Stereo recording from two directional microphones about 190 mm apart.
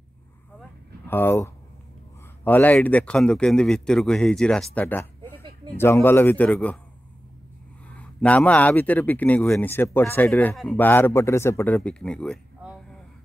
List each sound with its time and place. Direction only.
1.0 s a man's voice: 10° left (ahead or behind)
7.9 s speech: 5° left (ahead or behind)